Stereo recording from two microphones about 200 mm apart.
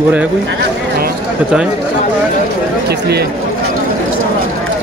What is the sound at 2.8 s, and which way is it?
Speech, 55° right (ahead or behind).